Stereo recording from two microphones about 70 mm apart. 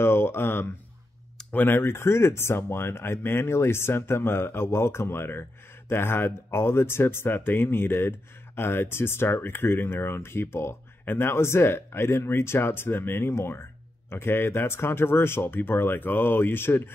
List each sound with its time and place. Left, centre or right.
0.0 s speech: left